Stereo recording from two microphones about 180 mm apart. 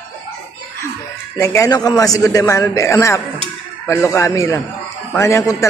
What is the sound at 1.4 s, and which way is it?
A man's voice, 15° left (ahead or behind).